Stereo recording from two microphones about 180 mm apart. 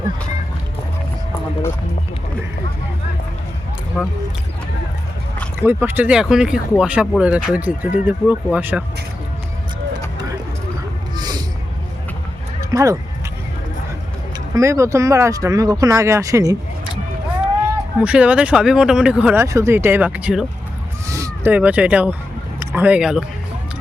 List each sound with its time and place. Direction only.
4.0 s speech: centre (ahead or behind)
5.5 s speech: 10° right (ahead or behind)
11.2 s a sound: 20° right (ahead or behind)
12.7 s speech: 20° right (ahead or behind)
14.5 s speech: 15° right (ahead or behind)
18.0 s speech: 5° right (ahead or behind)